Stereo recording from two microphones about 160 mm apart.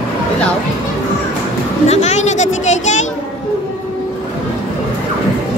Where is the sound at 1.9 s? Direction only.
45° left (ahead or behind).